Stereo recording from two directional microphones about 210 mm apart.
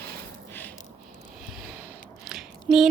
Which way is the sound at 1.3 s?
Centre (ahead or behind).